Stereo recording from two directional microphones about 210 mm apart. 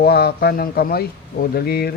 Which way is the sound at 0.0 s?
50° left (ahead or behind).